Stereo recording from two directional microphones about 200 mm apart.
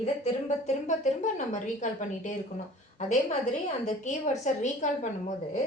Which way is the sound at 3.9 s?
35° left (ahead or behind).